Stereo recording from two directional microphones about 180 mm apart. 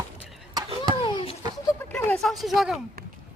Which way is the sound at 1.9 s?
5° left (ahead or behind).